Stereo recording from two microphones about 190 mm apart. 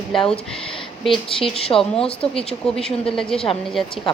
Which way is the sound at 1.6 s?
30° left (ahead or behind).